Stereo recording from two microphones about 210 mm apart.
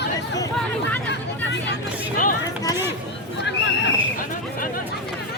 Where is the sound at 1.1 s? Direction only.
55° left (ahead or behind).